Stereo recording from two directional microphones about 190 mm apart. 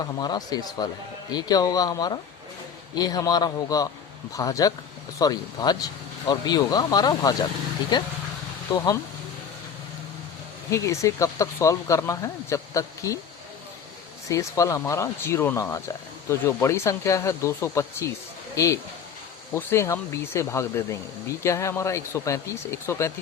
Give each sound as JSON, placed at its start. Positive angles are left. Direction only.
{"t": 0.0, "sound": "speech", "side_deg": 20}
{"t": 10.7, "sound": "speech", "side_deg": 15}
{"t": 14.3, "sound": "speech", "side_deg": 15}